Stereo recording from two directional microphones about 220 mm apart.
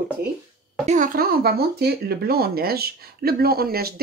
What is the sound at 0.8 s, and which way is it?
Speech, 35° right (ahead or behind).